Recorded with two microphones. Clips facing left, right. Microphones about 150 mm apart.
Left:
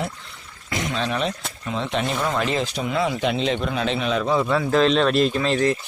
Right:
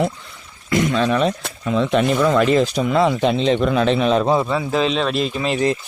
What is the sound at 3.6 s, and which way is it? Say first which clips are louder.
Speech: right 7 dB; 50° right (ahead or behind).